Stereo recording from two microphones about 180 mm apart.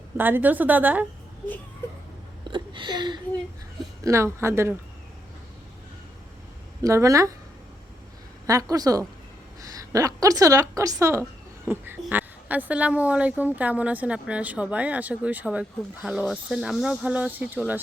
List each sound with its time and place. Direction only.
0.2 s a woman's voice: 10° right (ahead or behind)
2.5 s a sound: 25° right (ahead or behind)
4.0 s a woman's voice: 15° right (ahead or behind)
6.8 s a woman's voice: 15° right (ahead or behind)
8.7 s a woman's voice: 20° right (ahead or behind)